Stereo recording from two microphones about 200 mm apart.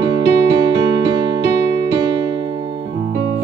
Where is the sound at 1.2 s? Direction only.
15° right (ahead or behind).